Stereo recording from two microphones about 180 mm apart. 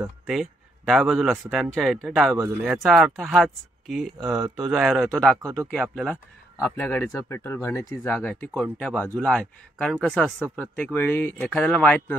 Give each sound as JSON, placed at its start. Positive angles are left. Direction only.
{"t": 0.3, "sound": "a man's voice", "side_deg": 0}
{"t": 2.3, "sound": "speech", "side_deg": -15}
{"t": 2.7, "sound": "a man's voice", "side_deg": -5}
{"t": 5.4, "sound": "speech", "side_deg": -20}
{"t": 5.7, "sound": "a man's voice", "side_deg": 5}